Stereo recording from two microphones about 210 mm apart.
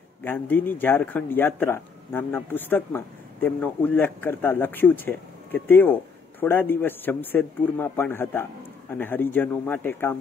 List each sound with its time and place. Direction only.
0.2 s speech: 10° left (ahead or behind)